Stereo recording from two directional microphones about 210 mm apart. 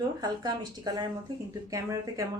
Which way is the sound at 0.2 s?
20° right (ahead or behind).